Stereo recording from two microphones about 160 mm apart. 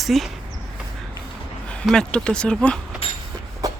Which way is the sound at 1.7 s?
5° left (ahead or behind).